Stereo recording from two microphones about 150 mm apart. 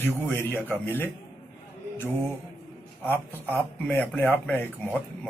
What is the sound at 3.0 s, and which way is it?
A man's voice, 15° left (ahead or behind).